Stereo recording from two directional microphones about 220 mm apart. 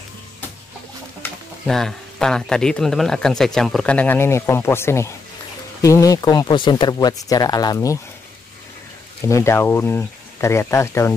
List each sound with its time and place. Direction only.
1.2 s speech: centre (ahead or behind)
9.2 s speech: 10° left (ahead or behind)